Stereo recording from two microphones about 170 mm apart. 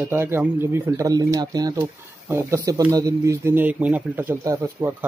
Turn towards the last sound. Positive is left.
turn(degrees=-15)  # may be behind; listen again after turning